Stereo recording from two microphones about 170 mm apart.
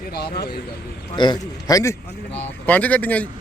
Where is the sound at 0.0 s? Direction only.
70° left (ahead or behind).